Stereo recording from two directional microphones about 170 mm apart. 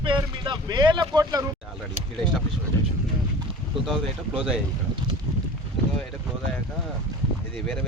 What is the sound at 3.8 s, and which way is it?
Speech, centre (ahead or behind).